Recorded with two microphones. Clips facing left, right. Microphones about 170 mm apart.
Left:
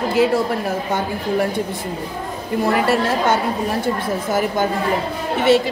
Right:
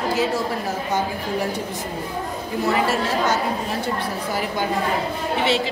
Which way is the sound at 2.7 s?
55° left (ahead or behind).